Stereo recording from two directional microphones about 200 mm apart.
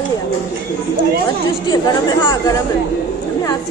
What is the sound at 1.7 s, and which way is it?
Speech, 20° left (ahead or behind).